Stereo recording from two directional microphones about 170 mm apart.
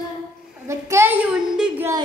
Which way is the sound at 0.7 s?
15° right (ahead or behind).